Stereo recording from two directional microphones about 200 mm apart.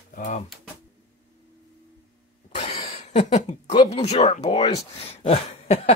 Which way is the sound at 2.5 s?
25° left (ahead or behind).